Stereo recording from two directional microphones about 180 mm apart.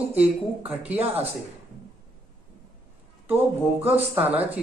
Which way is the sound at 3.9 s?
35° right (ahead or behind).